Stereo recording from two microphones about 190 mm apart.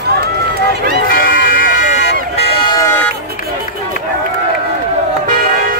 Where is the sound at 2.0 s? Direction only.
65° left (ahead or behind).